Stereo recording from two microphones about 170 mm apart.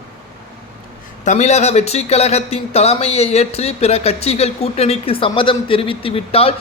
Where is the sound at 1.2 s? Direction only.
45° left (ahead or behind).